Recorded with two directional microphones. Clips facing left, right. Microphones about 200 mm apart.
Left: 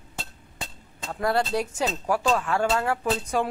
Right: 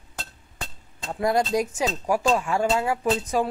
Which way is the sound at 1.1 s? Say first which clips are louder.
Right 2 dB; 15° right (ahead or behind).